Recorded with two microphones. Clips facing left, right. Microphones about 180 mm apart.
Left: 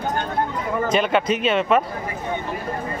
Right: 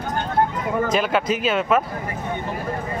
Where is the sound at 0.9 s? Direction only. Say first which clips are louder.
Left 4 dB; 5° right (ahead or behind).